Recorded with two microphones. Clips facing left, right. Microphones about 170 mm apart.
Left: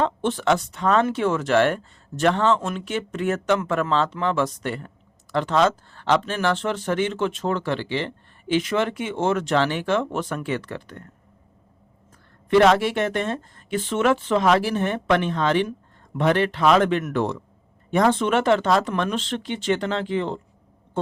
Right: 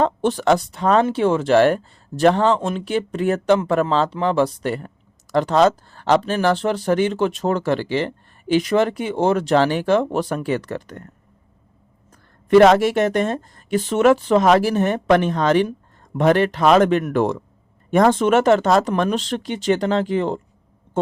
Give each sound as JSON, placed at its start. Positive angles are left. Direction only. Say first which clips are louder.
{"t": 0.0, "sound": "speech", "louder": "right 4 dB", "side_deg": -40}
{"t": 12.5, "sound": "speech", "louder": "right 5 dB", "side_deg": -40}